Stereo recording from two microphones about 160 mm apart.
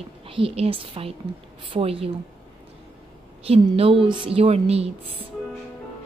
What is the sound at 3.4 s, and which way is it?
A woman's voice, 40° right (ahead or behind).